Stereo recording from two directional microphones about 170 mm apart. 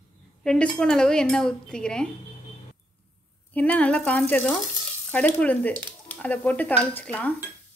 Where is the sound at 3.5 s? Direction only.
10° left (ahead or behind).